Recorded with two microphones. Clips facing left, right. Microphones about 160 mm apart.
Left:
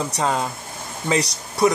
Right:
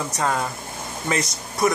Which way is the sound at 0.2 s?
20° left (ahead or behind).